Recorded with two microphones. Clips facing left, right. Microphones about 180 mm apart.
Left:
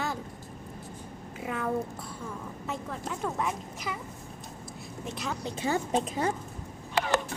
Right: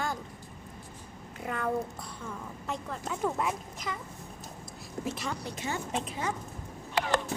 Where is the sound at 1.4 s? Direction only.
5° left (ahead or behind).